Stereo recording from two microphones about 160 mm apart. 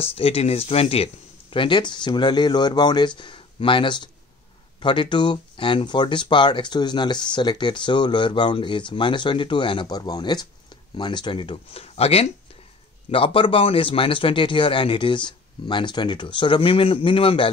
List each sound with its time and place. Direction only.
0.0 s a man's voice: 35° left (ahead or behind)